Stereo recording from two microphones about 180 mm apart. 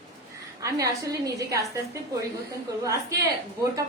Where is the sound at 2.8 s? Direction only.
15° right (ahead or behind).